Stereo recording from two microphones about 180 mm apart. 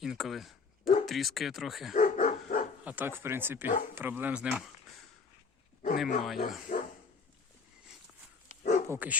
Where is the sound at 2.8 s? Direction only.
10° right (ahead or behind).